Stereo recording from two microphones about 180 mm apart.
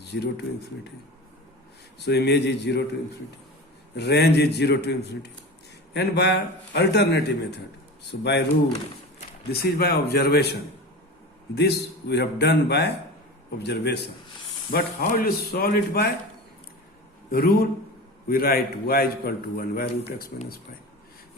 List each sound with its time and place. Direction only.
0.1 s a man's voice: 65° left (ahead or behind)
2.0 s a man's voice: 65° left (ahead or behind)
3.9 s a man's voice: 65° left (ahead or behind)
9.5 s a man's voice: 60° left (ahead or behind)
14.7 s a man's voice: 55° left (ahead or behind)
17.3 s a man's voice: 55° left (ahead or behind)